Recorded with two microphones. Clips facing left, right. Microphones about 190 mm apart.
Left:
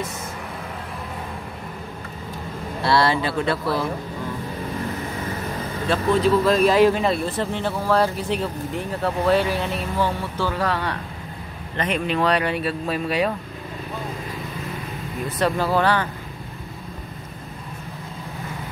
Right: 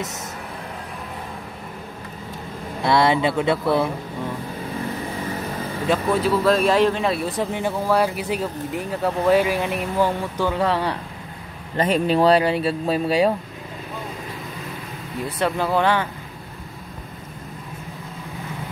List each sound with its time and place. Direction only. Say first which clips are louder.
2.8 s speech: right 2 dB; 20° right (ahead or behind)
5.9 s speech: left 1 dB; 5° right (ahead or behind)
7.3 s speech: right 1 dB; 10° right (ahead or behind); by 13.3 s 30° right (ahead or behind)
15.4 s speech: even; 15° right (ahead or behind)